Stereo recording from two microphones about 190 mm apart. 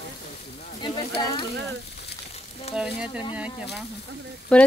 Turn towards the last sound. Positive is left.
turn(degrees=5)  # may be behind; listen again after turning